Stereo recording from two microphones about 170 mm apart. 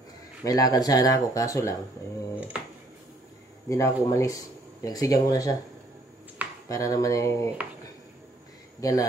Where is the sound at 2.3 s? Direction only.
10° right (ahead or behind).